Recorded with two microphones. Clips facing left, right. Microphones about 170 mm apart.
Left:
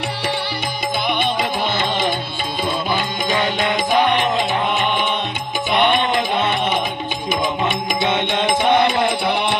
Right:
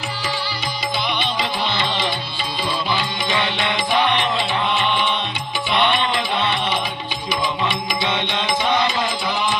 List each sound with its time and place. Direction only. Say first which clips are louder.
1.0 s music: left 5 dB; 50° left (ahead or behind)